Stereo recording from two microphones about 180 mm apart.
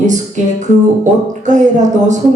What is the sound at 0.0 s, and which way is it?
Speech, 40° right (ahead or behind).